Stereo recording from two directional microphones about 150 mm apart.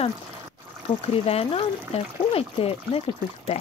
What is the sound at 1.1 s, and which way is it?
Speech, 40° left (ahead or behind).